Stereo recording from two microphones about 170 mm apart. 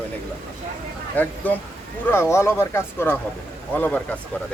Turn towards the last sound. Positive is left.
turn(degrees=10)  # may be behind; listen again after turning